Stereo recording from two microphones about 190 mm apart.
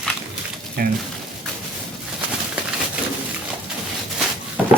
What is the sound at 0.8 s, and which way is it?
Speech, 50° right (ahead or behind).